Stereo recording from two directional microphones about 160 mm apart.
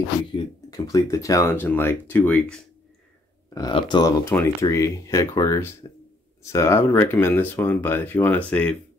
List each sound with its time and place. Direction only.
0.7 s speech: 20° left (ahead or behind)
3.5 s speech: 25° left (ahead or behind)
4.2 s speech: 15° left (ahead or behind)